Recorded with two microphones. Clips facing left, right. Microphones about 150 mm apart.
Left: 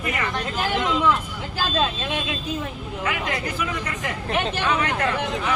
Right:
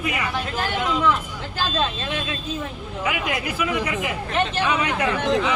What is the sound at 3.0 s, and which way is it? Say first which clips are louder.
Speech: right 1 dB; 10° right (ahead or behind).